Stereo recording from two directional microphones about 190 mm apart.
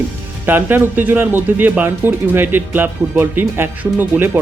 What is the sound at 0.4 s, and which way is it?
Speech, 10° right (ahead or behind).